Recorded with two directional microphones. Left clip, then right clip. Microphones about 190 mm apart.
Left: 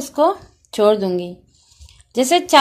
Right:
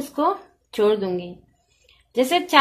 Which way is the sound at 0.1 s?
50° left (ahead or behind).